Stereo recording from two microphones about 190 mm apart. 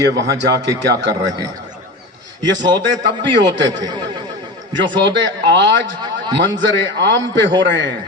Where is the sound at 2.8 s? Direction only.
75° right (ahead or behind).